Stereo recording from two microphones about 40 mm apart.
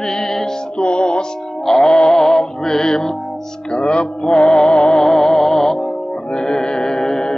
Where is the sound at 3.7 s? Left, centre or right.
Left.